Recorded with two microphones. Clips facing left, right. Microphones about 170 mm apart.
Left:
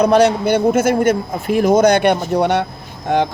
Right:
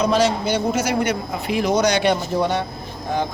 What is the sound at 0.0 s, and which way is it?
Speech, 60° left (ahead or behind).